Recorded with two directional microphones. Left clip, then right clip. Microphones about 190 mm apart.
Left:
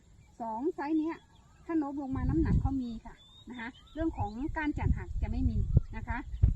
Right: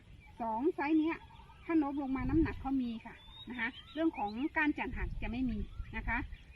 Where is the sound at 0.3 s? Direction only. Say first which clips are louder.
Even; 10° right (ahead or behind).